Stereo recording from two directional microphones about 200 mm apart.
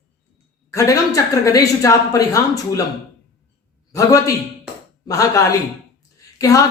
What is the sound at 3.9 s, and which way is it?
Speech, 15° left (ahead or behind).